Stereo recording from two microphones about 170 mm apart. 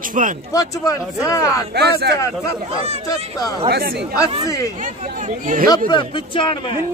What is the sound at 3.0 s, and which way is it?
Speech, 20° left (ahead or behind).